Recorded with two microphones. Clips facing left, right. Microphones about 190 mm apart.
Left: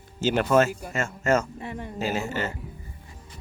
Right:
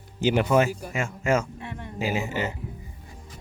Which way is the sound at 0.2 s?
15° right (ahead or behind).